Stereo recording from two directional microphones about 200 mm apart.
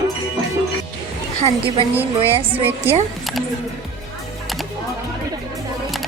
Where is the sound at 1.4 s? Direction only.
25° right (ahead or behind).